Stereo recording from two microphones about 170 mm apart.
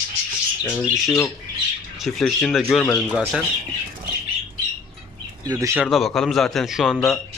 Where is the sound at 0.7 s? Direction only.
10° left (ahead or behind).